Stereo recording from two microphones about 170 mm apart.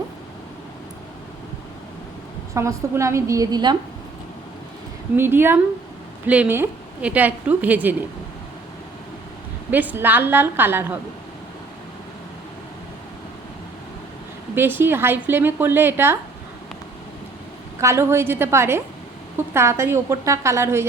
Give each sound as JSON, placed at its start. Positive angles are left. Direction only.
{"t": 2.6, "sound": "a woman's voice", "side_deg": -15}
{"t": 5.1, "sound": "a woman's voice", "side_deg": -15}
{"t": 9.7, "sound": "a woman's voice", "side_deg": -10}
{"t": 14.5, "sound": "a woman's voice", "side_deg": -10}
{"t": 17.7, "sound": "a woman's voice", "side_deg": -15}